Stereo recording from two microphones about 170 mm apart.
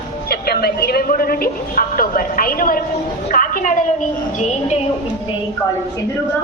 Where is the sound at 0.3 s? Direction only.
65° left (ahead or behind).